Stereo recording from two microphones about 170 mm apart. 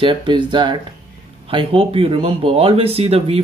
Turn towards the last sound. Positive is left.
turn(degrees=-35)  # may be behind; listen again after turning